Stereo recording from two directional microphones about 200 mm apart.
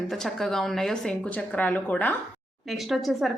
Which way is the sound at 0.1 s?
Centre (ahead or behind).